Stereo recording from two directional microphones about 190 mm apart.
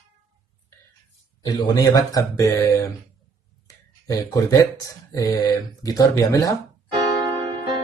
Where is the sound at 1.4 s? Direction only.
20° left (ahead or behind).